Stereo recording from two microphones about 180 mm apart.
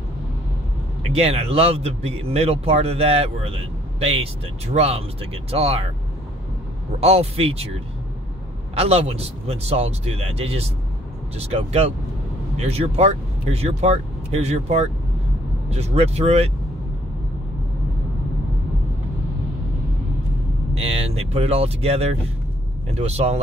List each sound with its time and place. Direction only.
1.1 s speech: 35° right (ahead or behind)
7.0 s speech: 35° right (ahead or behind)
8.7 s speech: 35° right (ahead or behind)
20.7 s speech: 35° right (ahead or behind)